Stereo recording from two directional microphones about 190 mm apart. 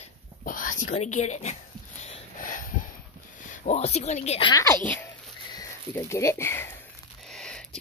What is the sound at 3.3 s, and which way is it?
Speech, 40° left (ahead or behind).